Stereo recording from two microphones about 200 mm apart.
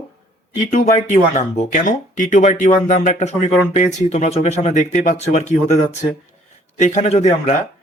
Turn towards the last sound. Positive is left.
turn(degrees=35)  # may be behind; listen again after turning